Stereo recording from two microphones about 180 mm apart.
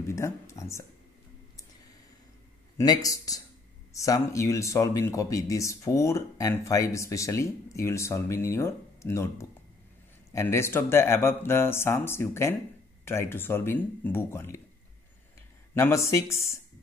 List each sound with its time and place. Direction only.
0.0 s speech: 15° left (ahead or behind)
2.8 s speech: 20° left (ahead or behind)
15.7 s speech: 15° left (ahead or behind)